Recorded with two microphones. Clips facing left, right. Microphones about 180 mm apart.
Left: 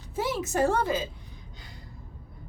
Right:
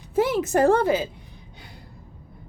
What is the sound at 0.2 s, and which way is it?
Speech, 55° right (ahead or behind).